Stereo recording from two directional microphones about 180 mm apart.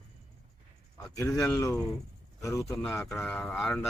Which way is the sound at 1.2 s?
20° left (ahead or behind).